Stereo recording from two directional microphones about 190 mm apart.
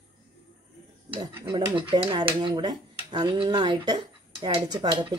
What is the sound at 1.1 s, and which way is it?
Speech, 25° right (ahead or behind).